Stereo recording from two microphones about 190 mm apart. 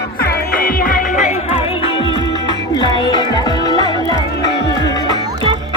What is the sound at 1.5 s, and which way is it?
Music, 25° left (ahead or behind).